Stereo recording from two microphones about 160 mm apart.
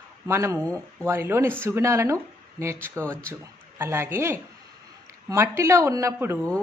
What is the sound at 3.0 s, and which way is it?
Speech, 5° left (ahead or behind).